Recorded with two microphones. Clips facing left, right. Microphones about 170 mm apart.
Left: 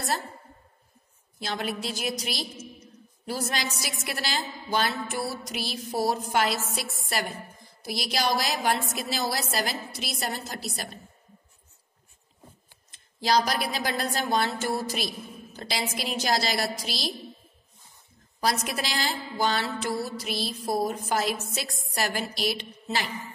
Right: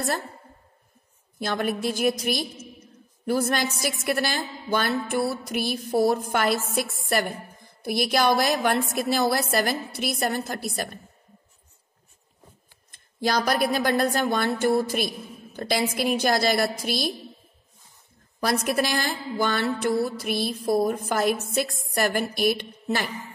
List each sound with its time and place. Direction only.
1.4 s a woman's voice: 50° right (ahead or behind)
12.9 s a woman's voice: 55° right (ahead or behind)
18.4 s a woman's voice: 55° right (ahead or behind)